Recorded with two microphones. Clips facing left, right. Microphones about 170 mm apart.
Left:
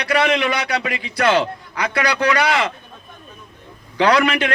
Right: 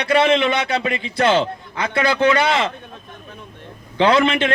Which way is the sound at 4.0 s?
25° right (ahead or behind).